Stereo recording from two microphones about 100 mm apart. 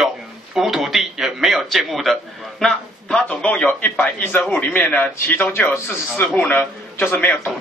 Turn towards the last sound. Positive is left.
turn(degrees=20)  # may be behind; listen again after turning